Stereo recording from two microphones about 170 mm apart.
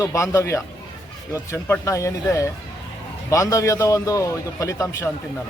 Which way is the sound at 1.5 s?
15° left (ahead or behind).